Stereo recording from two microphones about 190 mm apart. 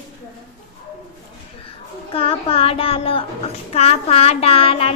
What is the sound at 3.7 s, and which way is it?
Speech, 35° left (ahead or behind).